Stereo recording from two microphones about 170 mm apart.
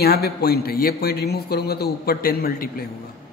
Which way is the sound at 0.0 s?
65° left (ahead or behind).